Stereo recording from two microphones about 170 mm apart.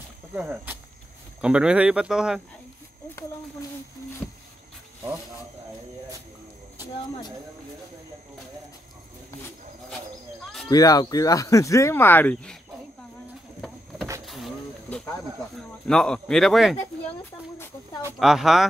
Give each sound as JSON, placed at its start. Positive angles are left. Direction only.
{"t": 0.4, "sound": "speech", "side_deg": -5}
{"t": 10.4, "sound": "a sound", "side_deg": 0}
{"t": 10.7, "sound": "speech", "side_deg": 20}
{"t": 14.2, "sound": "a sound", "side_deg": 0}
{"t": 15.5, "sound": "speech", "side_deg": 5}
{"t": 18.2, "sound": "speech", "side_deg": 0}